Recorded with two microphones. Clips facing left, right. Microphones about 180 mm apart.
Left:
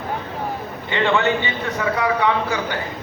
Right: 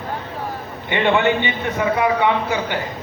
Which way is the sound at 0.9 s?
20° right (ahead or behind).